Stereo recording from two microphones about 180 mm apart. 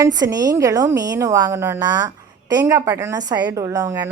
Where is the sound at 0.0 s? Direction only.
20° right (ahead or behind).